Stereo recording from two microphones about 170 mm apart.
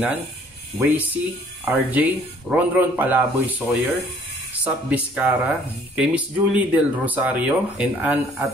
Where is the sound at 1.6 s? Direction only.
10° right (ahead or behind).